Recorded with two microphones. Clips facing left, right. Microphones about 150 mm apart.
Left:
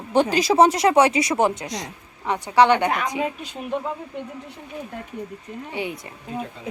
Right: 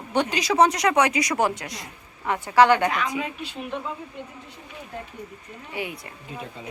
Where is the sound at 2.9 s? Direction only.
45° left (ahead or behind).